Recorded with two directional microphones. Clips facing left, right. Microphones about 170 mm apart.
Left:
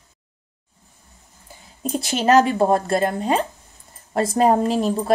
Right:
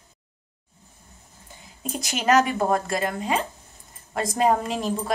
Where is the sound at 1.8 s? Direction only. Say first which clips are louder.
Left 5 dB; 30° left (ahead or behind).